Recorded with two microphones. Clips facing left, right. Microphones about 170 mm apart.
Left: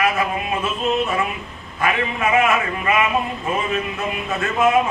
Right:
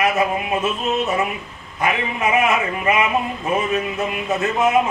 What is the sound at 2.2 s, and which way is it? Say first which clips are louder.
Speech: even; 20° right (ahead or behind).